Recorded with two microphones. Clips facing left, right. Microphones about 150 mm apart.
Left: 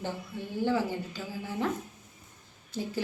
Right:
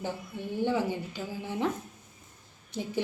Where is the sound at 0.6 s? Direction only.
15° right (ahead or behind).